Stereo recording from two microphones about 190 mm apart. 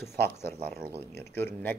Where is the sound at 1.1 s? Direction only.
10° left (ahead or behind).